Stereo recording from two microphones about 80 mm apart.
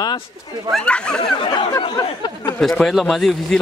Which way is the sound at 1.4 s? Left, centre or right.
Left.